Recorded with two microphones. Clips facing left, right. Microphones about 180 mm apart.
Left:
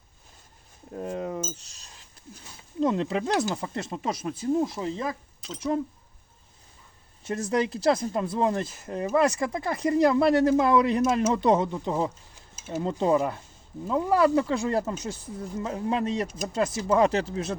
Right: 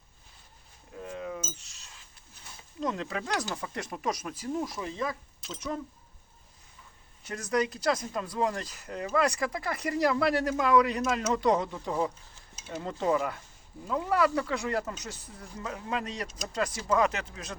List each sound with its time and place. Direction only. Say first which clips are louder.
0.9 s a sound: left 6 dB; 45° left (ahead or behind)
2.8 s speech: left 8 dB; 25° left (ahead or behind)
7.3 s speech: left 3 dB; 25° left (ahead or behind)